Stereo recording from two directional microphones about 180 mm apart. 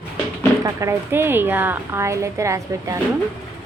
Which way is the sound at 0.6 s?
15° right (ahead or behind).